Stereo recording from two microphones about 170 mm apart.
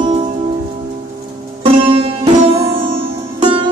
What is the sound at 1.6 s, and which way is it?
Music, 35° right (ahead or behind).